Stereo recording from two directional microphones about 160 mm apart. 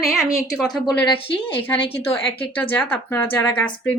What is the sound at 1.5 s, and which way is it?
A woman's voice, 15° left (ahead or behind).